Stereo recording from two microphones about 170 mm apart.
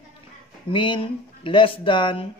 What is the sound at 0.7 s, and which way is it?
Speech, 30° left (ahead or behind).